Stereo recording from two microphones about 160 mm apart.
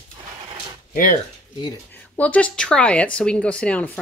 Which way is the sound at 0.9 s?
55° left (ahead or behind).